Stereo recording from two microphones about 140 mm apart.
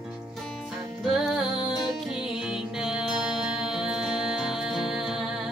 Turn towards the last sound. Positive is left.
turn(degrees=-5)  # may be behind; listen again after turning